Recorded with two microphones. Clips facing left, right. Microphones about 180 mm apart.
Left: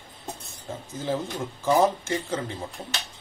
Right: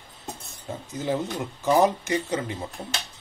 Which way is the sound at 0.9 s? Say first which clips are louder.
Right 2 dB; 20° right (ahead or behind).